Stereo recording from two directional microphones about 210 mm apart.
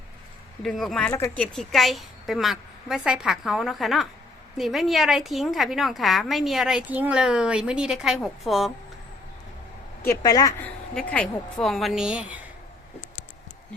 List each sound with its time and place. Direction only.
0.6 s a woman's voice: centre (ahead or behind)
10.1 s speech: 15° left (ahead or behind)
10.9 s a woman's voice: 5° left (ahead or behind)